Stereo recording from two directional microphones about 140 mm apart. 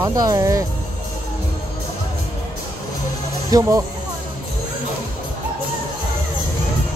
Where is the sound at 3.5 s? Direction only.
25° right (ahead or behind).